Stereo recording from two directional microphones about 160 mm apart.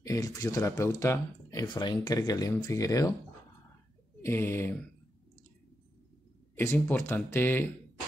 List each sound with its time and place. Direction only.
0.0 s speech: 20° left (ahead or behind)
4.2 s speech: 15° left (ahead or behind)
6.5 s speech: 15° left (ahead or behind)